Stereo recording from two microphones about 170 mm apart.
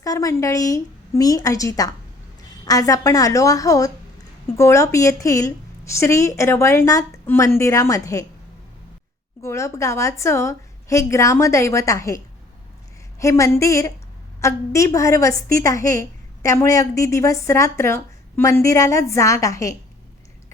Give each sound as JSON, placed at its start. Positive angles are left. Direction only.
{"t": 0.0, "sound": "a woman's voice", "side_deg": 20}
{"t": 9.4, "sound": "a woman's voice", "side_deg": 15}